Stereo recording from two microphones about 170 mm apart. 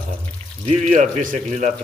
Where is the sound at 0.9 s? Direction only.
45° right (ahead or behind).